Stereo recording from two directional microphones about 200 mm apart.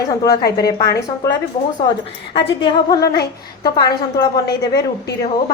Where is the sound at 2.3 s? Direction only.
20° left (ahead or behind).